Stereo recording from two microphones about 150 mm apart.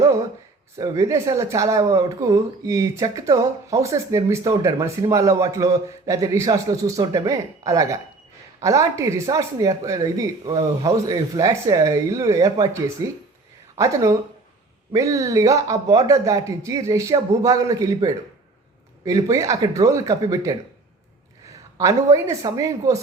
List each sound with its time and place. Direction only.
0.8 s speech: 20° right (ahead or behind)